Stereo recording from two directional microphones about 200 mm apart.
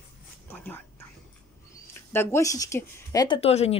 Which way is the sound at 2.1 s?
10° left (ahead or behind).